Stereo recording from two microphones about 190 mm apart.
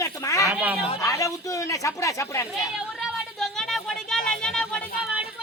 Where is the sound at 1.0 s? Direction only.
15° left (ahead or behind).